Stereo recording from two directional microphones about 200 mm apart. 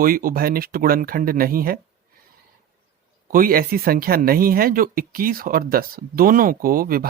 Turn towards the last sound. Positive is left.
turn(degrees=-45)  # may be behind; listen again after turning